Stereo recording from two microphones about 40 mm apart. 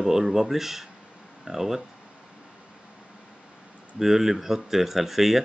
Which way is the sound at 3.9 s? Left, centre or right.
Centre.